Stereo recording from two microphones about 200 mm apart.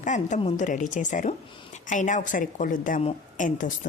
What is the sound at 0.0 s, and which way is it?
Speech, 35° left (ahead or behind).